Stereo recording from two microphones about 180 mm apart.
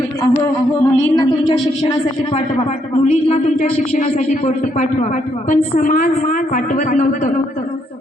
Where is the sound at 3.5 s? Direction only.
50° left (ahead or behind).